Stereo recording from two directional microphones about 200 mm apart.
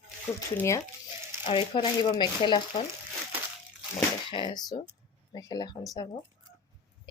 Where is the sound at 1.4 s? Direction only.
25° left (ahead or behind).